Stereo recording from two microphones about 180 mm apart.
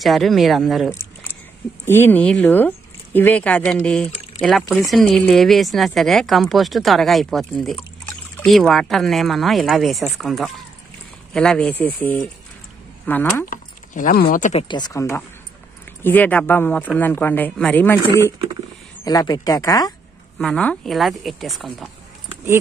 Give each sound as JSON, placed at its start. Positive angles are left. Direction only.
{"t": 0.0, "sound": "speech", "side_deg": 0}
{"t": 1.9, "sound": "speech", "side_deg": 10}
{"t": 13.5, "sound": "speech", "side_deg": 50}
{"t": 14.7, "sound": "speech", "side_deg": 20}
{"t": 20.3, "sound": "speech", "side_deg": 5}